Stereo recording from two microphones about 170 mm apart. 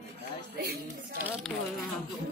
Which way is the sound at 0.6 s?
65° right (ahead or behind).